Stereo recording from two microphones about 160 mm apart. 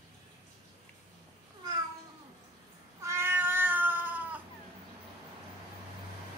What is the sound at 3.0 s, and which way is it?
Cat, 15° right (ahead or behind).